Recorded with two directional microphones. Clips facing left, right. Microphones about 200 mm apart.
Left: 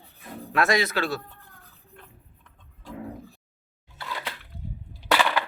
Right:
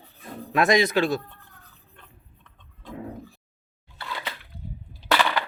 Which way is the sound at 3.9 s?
5° left (ahead or behind).